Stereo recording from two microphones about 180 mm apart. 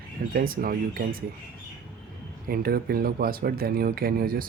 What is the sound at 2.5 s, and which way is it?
Speech, 55° right (ahead or behind).